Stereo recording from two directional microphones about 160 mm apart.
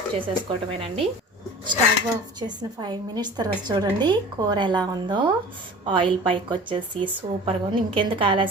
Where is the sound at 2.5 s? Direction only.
25° right (ahead or behind).